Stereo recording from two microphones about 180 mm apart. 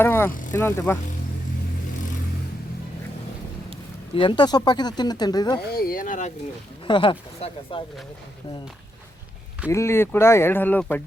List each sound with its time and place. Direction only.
0.0 s vehicle: 10° left (ahead or behind)
0.3 s speech: 45° left (ahead or behind)
0.5 s speech: 10° left (ahead or behind)
4.1 s speech: 30° left (ahead or behind)
5.6 s speech: 55° left (ahead or behind)
6.8 s speech: 25° left (ahead or behind)
9.6 s speech: 15° left (ahead or behind)